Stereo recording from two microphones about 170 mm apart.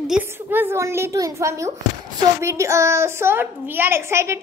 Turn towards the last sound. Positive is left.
turn(degrees=-15)  # may be behind; listen again after turning